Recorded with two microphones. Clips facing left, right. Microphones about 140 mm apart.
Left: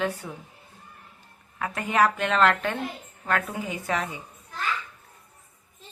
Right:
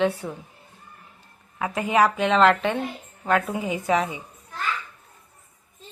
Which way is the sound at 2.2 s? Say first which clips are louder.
Right 4 dB; centre (ahead or behind).